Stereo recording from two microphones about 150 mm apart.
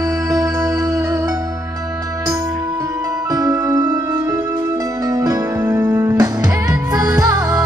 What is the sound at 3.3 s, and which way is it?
Music, 25° right (ahead or behind).